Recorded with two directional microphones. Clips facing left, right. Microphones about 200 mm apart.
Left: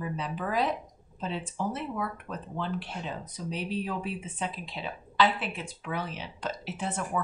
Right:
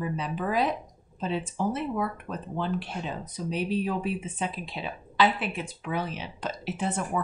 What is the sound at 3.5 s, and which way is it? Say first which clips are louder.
Speech: right 5 dB; 15° right (ahead or behind).